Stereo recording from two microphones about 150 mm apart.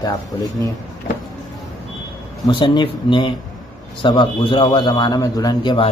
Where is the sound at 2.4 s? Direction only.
30° left (ahead or behind).